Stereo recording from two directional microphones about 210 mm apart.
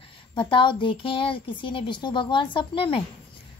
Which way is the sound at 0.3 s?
25° left (ahead or behind).